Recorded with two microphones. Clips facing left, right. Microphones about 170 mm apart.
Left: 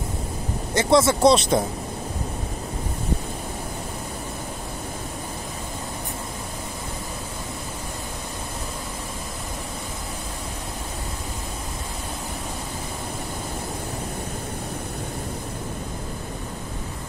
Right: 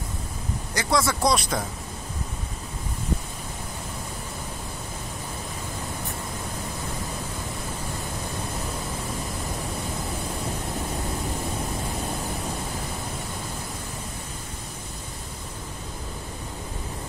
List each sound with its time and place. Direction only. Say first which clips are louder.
0.7 s speech: left 7 dB; 25° left (ahead or behind)